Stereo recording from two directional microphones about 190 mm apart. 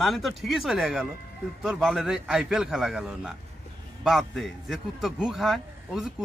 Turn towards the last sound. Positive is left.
turn(degrees=0)  # may be behind; listen again after turning